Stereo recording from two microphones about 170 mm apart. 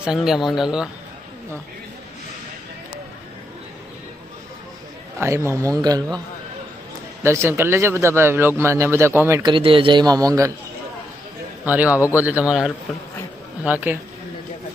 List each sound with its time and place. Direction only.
0.0 s speech: 5° right (ahead or behind)
5.2 s a man's voice: 15° right (ahead or behind)
7.2 s speech: 15° right (ahead or behind)
9.4 s a man's voice: 30° right (ahead or behind)
11.6 s speech: 10° right (ahead or behind)